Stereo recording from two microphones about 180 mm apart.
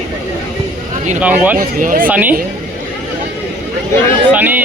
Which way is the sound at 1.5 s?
50° right (ahead or behind).